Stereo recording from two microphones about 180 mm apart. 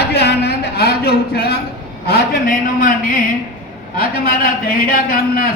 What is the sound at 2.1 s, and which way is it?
A man's voice, 55° left (ahead or behind).